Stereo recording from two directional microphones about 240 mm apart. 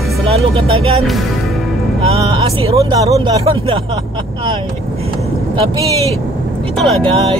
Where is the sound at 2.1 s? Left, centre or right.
Right.